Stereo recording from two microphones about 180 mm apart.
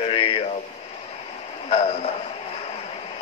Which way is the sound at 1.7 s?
35° left (ahead or behind).